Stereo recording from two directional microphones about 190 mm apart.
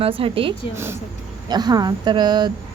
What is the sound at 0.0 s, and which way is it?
Speech, 30° right (ahead or behind).